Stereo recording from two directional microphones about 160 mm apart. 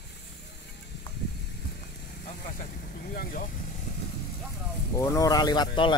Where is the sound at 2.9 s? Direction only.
60° left (ahead or behind).